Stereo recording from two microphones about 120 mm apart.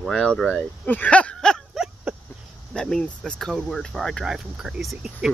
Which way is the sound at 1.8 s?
10° right (ahead or behind).